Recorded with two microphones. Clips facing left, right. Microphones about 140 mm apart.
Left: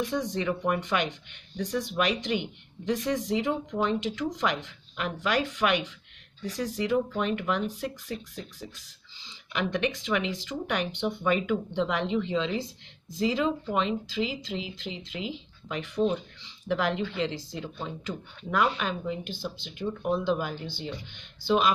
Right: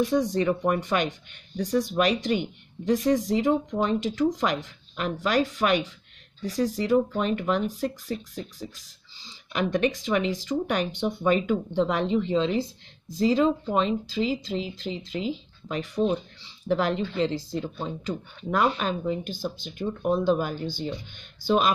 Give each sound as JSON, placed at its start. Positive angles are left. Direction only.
{"t": 0.0, "sound": "speech", "side_deg": -40}